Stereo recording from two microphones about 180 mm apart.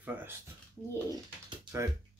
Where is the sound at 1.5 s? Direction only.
15° right (ahead or behind).